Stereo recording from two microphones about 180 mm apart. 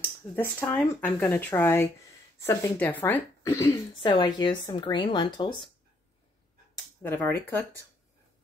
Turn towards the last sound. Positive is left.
turn(degrees=10)  # may be behind; listen again after turning